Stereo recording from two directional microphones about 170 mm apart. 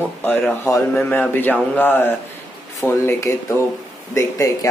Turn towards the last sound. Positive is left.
turn(degrees=20)  # may be behind; listen again after turning